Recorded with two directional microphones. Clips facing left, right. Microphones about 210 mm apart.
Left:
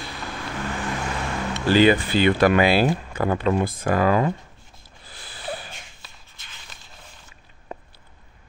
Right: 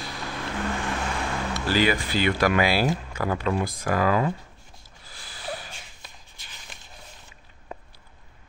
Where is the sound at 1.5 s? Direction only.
25° left (ahead or behind).